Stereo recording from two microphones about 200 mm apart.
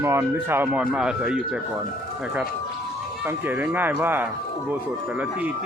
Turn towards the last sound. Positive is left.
turn(degrees=-5)  # may be behind; listen again after turning